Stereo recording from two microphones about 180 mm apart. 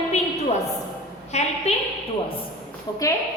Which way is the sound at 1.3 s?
40° left (ahead or behind).